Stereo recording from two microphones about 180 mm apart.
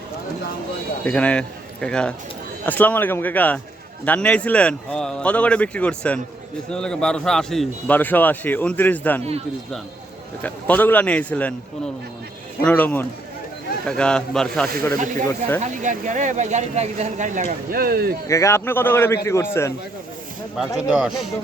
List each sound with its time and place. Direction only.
1.0 s a man's voice: 5° left (ahead or behind)
10.4 s a man's voice: 10° left (ahead or behind)
12.6 s a man's voice: 10° left (ahead or behind)
15.6 s speech: 45° right (ahead or behind)
17.7 s speech: 55° right (ahead or behind)
18.3 s a man's voice: 15° left (ahead or behind)
20.7 s a man's voice: centre (ahead or behind)